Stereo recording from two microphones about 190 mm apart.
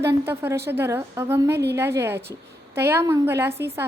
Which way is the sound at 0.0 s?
15° right (ahead or behind).